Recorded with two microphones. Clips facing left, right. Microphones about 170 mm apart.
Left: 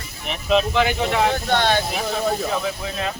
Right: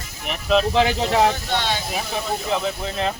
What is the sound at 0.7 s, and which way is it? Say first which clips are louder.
Speech: right 1 dB; 35° right (ahead or behind).